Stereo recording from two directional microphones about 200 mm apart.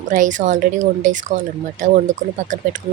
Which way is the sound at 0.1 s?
40° right (ahead or behind).